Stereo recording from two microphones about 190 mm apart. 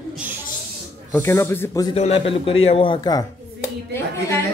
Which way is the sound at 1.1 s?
15° left (ahead or behind).